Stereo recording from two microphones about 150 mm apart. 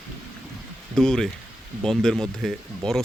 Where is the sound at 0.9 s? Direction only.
5° left (ahead or behind).